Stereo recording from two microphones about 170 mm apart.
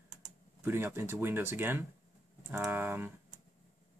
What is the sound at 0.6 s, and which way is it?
Speech, 15° right (ahead or behind).